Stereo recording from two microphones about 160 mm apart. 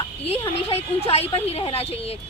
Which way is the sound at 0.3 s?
40° left (ahead or behind).